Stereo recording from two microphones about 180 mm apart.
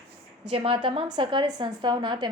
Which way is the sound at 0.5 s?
30° right (ahead or behind).